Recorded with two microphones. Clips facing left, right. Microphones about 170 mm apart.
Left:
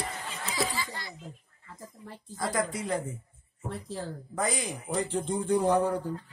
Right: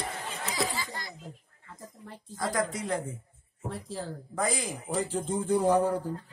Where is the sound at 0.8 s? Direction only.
45° right (ahead or behind).